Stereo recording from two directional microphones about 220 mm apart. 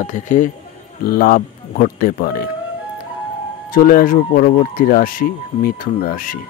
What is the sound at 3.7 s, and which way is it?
Speech, 40° left (ahead or behind).